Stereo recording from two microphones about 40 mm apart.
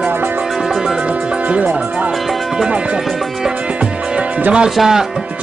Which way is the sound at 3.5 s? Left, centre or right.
Right.